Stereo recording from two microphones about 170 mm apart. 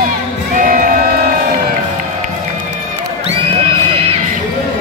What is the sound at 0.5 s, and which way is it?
Music, 50° right (ahead or behind).